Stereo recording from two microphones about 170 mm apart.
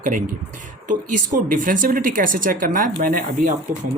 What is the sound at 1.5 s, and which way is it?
Speech, 55° right (ahead or behind).